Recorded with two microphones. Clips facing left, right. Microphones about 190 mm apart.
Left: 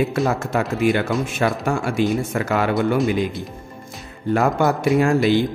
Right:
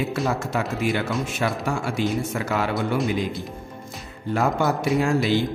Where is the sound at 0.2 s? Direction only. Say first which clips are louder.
Left 4 dB; 50° left (ahead or behind).